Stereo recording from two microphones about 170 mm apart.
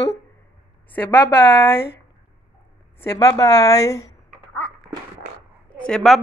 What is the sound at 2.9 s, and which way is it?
A woman's voice, 15° left (ahead or behind).